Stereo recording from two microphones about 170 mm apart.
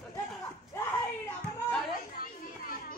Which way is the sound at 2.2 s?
60° left (ahead or behind).